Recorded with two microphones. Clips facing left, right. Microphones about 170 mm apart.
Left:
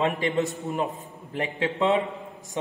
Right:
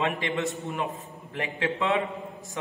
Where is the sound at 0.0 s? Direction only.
35° left (ahead or behind).